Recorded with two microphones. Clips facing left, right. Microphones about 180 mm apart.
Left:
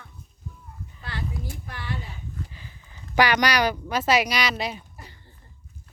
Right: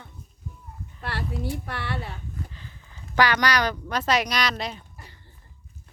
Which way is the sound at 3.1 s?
10° left (ahead or behind).